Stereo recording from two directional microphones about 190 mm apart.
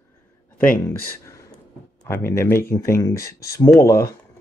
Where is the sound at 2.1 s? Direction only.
15° left (ahead or behind).